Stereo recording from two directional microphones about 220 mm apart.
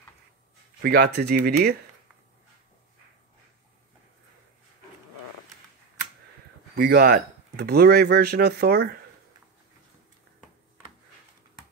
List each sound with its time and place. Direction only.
0.7 s speech: 45° right (ahead or behind)
6.8 s speech: 45° right (ahead or behind)